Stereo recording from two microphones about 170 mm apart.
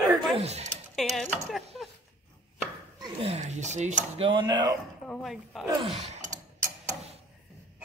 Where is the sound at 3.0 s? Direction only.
35° right (ahead or behind).